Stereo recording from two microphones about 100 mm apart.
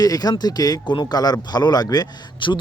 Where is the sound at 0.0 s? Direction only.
40° left (ahead or behind).